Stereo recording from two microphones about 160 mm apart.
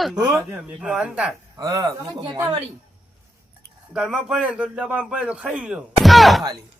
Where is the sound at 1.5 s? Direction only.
25° right (ahead or behind).